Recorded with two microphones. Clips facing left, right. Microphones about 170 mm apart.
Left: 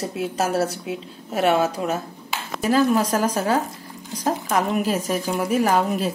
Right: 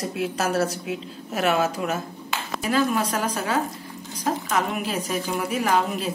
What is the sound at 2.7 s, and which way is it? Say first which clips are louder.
Speech: left 4 dB; 35° left (ahead or behind).